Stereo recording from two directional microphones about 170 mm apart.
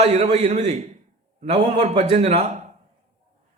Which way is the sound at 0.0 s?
40° right (ahead or behind).